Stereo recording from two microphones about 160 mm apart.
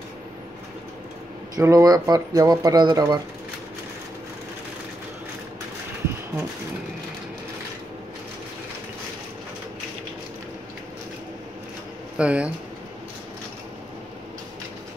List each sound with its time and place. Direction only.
1.5 s speech: 20° right (ahead or behind)
12.2 s speech: 5° right (ahead or behind)